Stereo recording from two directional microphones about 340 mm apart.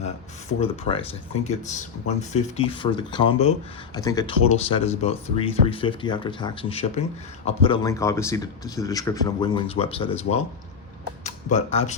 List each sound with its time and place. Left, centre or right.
0.6 s speech: centre